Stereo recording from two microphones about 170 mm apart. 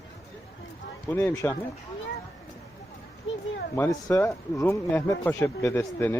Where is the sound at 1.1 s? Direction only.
10° left (ahead or behind).